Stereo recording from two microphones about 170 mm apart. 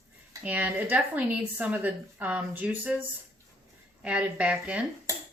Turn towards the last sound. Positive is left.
turn(degrees=-20)  # may be behind; listen again after turning